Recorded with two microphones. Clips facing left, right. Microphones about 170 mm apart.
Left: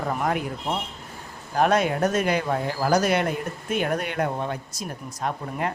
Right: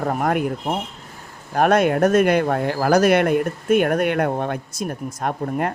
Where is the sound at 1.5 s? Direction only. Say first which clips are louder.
Right 5 dB; 55° right (ahead or behind).